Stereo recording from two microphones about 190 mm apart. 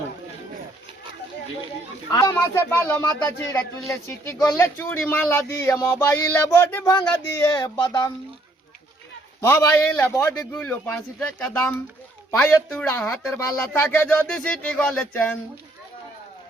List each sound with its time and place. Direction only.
2.0 s speech: 20° left (ahead or behind)
9.5 s speech: 10° left (ahead or behind)